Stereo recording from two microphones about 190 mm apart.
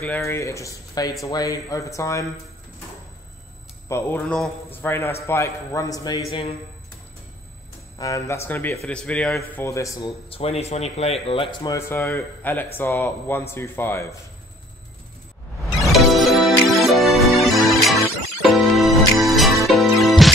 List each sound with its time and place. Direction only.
0.0 s speech: 10° left (ahead or behind)
3.9 s speech: 5° left (ahead or behind)
8.0 s speech: 15° left (ahead or behind)
11.7 s speech: 15° left (ahead or behind)
15.8 s music: centre (ahead or behind)